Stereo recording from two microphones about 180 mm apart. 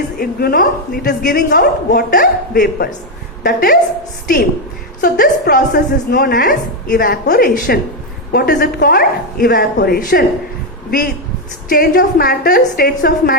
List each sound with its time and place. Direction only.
0.2 s a woman's voice: 55° left (ahead or behind)
4.9 s a woman's voice: 50° left (ahead or behind)
11.7 s a woman's voice: 55° left (ahead or behind)